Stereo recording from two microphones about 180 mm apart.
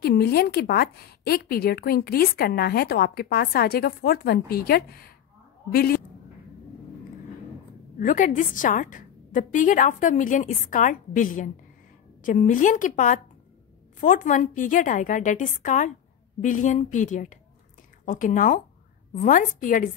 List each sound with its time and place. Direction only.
0.0 s a woman's voice: 60° left (ahead or behind)
8.0 s a woman's voice: 45° left (ahead or behind)